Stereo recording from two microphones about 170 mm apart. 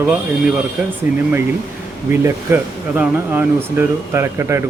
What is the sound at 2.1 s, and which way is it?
Speech, 15° right (ahead or behind).